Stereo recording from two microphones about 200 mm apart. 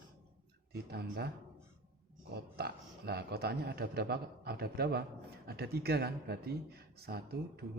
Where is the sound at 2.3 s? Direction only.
50° right (ahead or behind).